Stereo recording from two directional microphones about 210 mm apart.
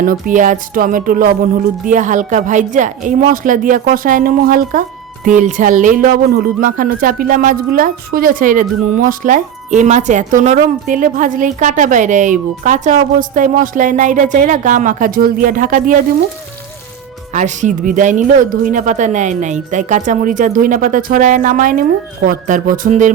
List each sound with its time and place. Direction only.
0.0 s speech: 40° right (ahead or behind)
17.3 s speech: 35° right (ahead or behind)